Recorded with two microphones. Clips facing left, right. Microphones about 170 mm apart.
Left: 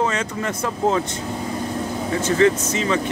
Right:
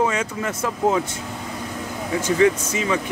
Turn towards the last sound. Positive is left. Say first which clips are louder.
# left 2 dB
turn(degrees=-10)  # may be behind; listen again after turning